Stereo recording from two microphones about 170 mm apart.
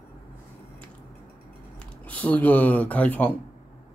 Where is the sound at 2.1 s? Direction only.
10° left (ahead or behind).